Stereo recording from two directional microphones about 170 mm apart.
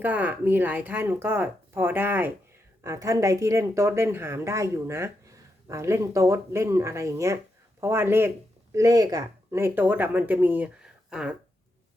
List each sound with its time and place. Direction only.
0.0 s a woman's voice: 10° right (ahead or behind)